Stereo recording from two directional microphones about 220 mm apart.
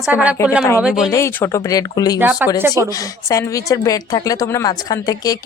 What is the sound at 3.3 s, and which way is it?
Speech, 15° left (ahead or behind).